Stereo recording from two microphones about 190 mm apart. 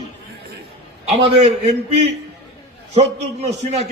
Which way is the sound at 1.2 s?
35° right (ahead or behind).